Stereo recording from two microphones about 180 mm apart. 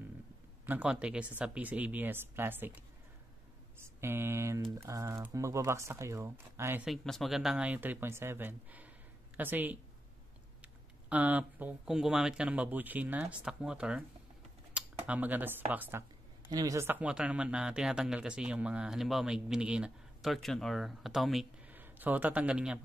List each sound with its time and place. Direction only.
0.7 s speech: 5° right (ahead or behind)
3.8 s a sound: 15° right (ahead or behind)
4.8 s speech: 20° right (ahead or behind)
6.9 s speech: centre (ahead or behind)